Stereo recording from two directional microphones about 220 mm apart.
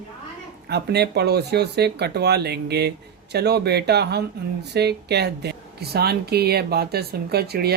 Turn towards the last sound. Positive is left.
turn(degrees=-45)  # may be behind; listen again after turning